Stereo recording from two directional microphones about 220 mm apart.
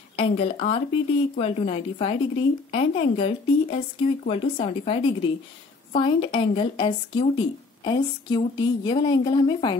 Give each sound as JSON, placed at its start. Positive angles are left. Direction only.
{"t": 0.1, "sound": "a woman's voice", "side_deg": 25}